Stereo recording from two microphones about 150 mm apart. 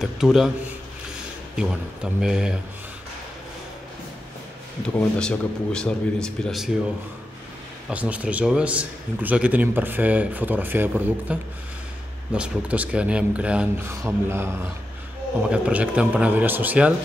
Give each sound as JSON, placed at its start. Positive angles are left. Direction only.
{"t": 0.0, "sound": "speech", "side_deg": -5}
{"t": 1.6, "sound": "speech", "side_deg": -5}
{"t": 4.8, "sound": "speech", "side_deg": 5}
{"t": 7.9, "sound": "a man's voice", "side_deg": -10}
{"t": 12.4, "sound": "a man's voice", "side_deg": -10}
{"t": 15.5, "sound": "a man's voice", "side_deg": -10}